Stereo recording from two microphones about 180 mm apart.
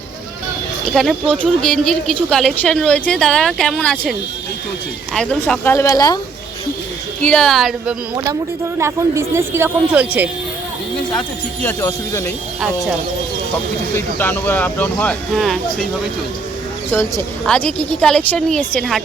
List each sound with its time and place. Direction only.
0.9 s a woman's voice: centre (ahead or behind)
5.1 s speech: 5° left (ahead or behind); by 6.1 s 20° left (ahead or behind)
7.2 s a woman's voice: 5° left (ahead or behind)
8.1 s a woman's voice: 20° right (ahead or behind)
11.6 s speech: 15° left (ahead or behind)
12.5 s a woman's voice: 5° right (ahead or behind)
13.9 s speech: 10° left (ahead or behind)
16.9 s a woman's voice: 10° left (ahead or behind)